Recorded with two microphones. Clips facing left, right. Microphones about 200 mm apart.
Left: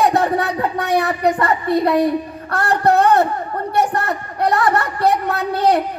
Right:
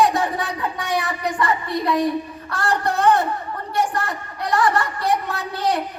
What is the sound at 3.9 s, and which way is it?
Child singing, 60° left (ahead or behind).